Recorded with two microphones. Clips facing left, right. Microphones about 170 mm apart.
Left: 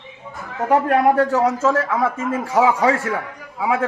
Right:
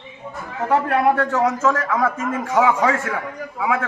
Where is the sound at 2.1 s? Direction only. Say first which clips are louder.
Left 1 dB; 30° left (ahead or behind).